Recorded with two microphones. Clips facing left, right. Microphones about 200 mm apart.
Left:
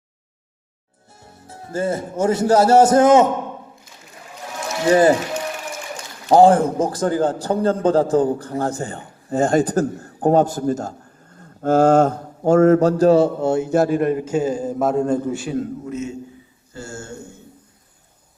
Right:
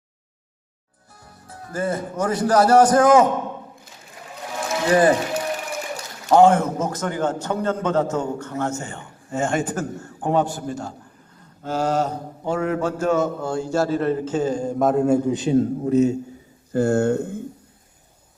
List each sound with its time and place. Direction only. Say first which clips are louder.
1.1 s a man's voice: left 2 dB; 25° left (ahead or behind)
4.9 s speech: left 3 dB; 30° left (ahead or behind)
6.2 s a man's voice: left 2 dB; 35° left (ahead or behind); by 15.6 s 20° right (ahead or behind)
15.9 s a man's voice: right 10 dB; 35° right (ahead or behind)
16.7 s speech: right 15 dB; 60° right (ahead or behind)